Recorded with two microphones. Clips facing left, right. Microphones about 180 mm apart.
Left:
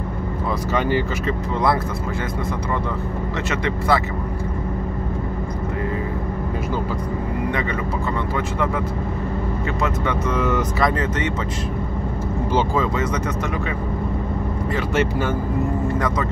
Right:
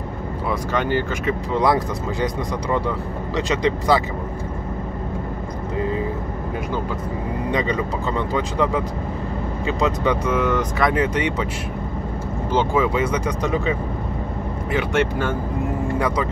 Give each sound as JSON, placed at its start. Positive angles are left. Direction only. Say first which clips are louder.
{"t": 0.7, "sound": "speech", "louder": "left 1 dB", "side_deg": 5}
{"t": 1.5, "sound": "speech", "louder": "right 2 dB", "side_deg": -15}
{"t": 3.4, "sound": "speech", "louder": "right 3 dB", "side_deg": -15}
{"t": 8.4, "sound": "speech", "louder": "right 3 dB", "side_deg": -15}
{"t": 10.3, "sound": "speech", "louder": "right 1 dB", "side_deg": 0}
{"t": 11.0, "sound": "speech", "louder": "right 2 dB", "side_deg": -10}
{"t": 12.7, "sound": "speech", "louder": "right 2 dB", "side_deg": -10}
{"t": 15.0, "sound": "speech", "louder": "left 1 dB", "side_deg": 5}